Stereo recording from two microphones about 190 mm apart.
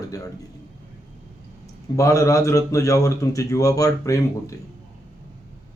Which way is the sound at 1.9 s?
15° left (ahead or behind).